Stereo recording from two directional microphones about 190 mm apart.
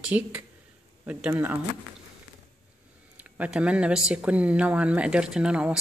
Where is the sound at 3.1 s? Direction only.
5° right (ahead or behind).